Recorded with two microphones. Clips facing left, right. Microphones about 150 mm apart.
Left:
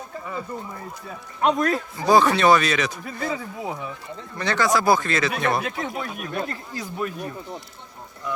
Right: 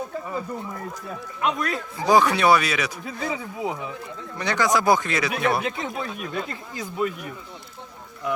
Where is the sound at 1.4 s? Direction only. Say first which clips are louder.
Left 5 dB; 40° left (ahead or behind).